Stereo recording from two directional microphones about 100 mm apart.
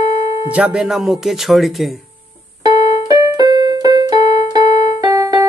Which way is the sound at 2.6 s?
40° right (ahead or behind).